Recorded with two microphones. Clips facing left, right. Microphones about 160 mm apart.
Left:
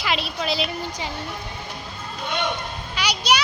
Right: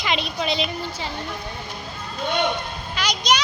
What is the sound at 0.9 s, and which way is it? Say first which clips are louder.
Speech: even; 15° left (ahead or behind).